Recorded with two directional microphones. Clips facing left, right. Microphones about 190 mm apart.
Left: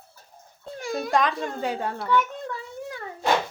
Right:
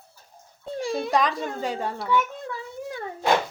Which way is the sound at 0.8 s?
30° right (ahead or behind).